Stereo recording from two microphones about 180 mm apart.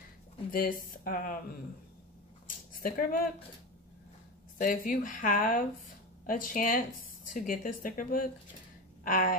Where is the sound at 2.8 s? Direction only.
50° left (ahead or behind).